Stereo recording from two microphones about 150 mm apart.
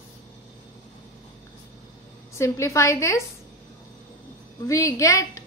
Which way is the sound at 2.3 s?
20° left (ahead or behind).